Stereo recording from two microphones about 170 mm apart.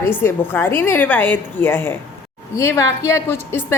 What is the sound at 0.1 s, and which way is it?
A woman's voice, 10° left (ahead or behind).